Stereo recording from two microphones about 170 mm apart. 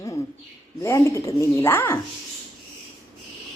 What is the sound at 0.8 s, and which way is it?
A woman's voice, 15° left (ahead or behind).